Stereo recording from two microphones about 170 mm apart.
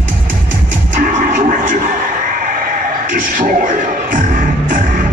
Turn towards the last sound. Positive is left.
turn(degrees=-50)  # may be behind; listen again after turning